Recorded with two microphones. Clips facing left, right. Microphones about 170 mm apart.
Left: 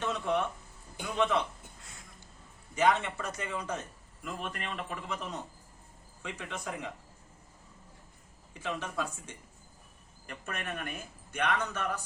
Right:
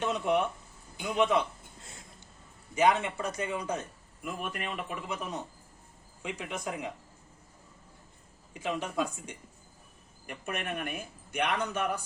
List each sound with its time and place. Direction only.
0.0 s a man's voice: 15° right (ahead or behind)
1.8 s a sound: 25° right (ahead or behind)
2.7 s a man's voice: 10° right (ahead or behind)
8.5 s a man's voice: 15° right (ahead or behind)